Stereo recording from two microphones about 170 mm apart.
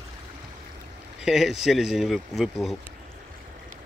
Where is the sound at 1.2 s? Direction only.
5° right (ahead or behind).